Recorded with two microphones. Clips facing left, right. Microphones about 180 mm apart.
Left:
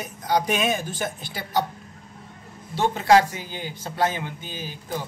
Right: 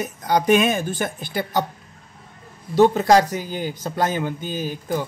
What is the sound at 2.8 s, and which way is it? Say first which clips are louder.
Speech: right 4 dB; 45° right (ahead or behind).